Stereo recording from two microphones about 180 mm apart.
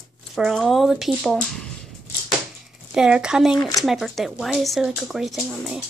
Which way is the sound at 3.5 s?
20° left (ahead or behind).